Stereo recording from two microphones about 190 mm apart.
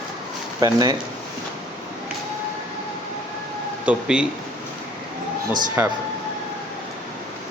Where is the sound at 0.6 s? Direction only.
20° right (ahead or behind).